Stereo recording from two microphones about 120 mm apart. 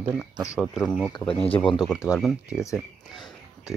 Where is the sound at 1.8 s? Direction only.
5° right (ahead or behind).